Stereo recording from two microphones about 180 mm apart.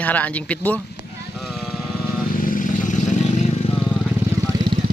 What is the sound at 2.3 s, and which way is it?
Vehicle, 50° left (ahead or behind).